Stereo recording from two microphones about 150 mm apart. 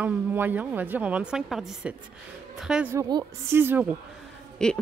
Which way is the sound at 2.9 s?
25° right (ahead or behind).